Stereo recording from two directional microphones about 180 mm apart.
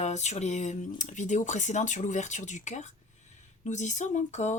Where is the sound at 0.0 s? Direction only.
40° left (ahead or behind).